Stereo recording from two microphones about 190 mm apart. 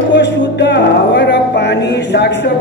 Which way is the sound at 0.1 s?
65° left (ahead or behind).